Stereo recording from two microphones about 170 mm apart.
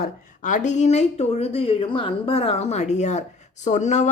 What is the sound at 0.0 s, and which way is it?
Speech, 50° left (ahead or behind).